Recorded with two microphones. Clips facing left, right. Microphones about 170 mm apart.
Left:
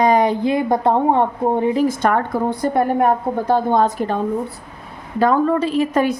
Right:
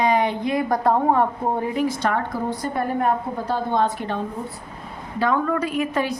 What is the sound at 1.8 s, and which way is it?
Speech, 50° left (ahead or behind).